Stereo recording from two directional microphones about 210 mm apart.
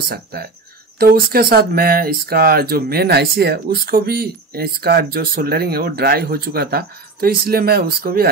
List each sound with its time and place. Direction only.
0.1 s speech: 50° right (ahead or behind)